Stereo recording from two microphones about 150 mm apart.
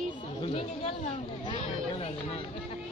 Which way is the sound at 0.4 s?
40° left (ahead or behind).